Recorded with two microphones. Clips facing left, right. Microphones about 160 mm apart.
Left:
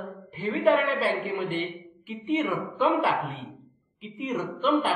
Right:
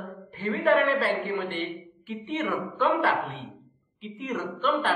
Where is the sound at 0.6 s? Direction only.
Centre (ahead or behind).